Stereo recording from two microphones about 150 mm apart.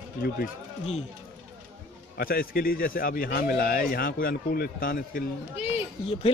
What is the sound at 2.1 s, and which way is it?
Speech, 80° left.